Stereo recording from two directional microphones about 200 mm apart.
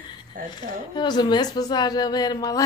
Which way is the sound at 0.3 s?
45° right (ahead or behind).